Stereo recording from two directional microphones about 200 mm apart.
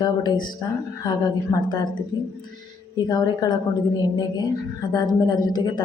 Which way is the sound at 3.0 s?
20° left (ahead or behind).